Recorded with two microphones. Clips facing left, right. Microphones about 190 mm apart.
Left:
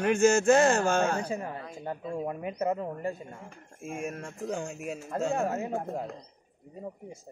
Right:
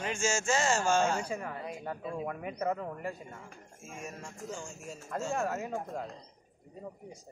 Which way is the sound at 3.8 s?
55° left (ahead or behind).